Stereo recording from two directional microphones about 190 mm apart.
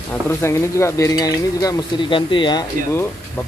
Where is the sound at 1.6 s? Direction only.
20° left (ahead or behind).